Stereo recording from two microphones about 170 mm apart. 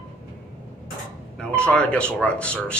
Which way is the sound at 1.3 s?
5° left (ahead or behind).